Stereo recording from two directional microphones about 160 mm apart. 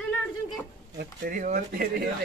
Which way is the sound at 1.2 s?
60° right (ahead or behind).